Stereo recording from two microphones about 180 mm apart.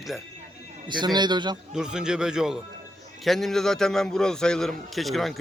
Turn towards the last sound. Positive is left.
turn(degrees=0)  # may be behind; listen again after turning